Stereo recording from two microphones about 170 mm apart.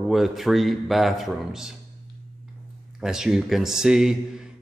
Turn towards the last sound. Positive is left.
turn(degrees=-5)  # may be behind; listen again after turning